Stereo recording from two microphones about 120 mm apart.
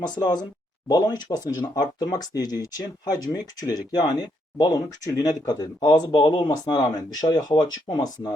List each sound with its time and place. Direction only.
0.0 s speech: 35° left (ahead or behind)